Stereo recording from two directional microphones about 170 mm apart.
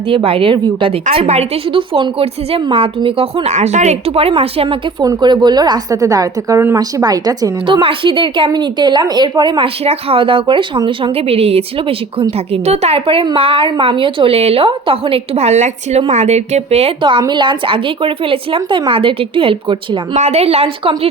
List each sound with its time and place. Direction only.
0.1 s a woman's voice: 35° right (ahead or behind)